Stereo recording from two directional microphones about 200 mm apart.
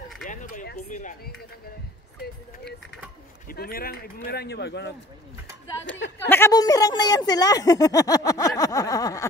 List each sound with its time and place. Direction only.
0.2 s a sound: 40° left (ahead or behind)
3.4 s speech: 50° left (ahead or behind)
6.2 s speech: 10° left (ahead or behind)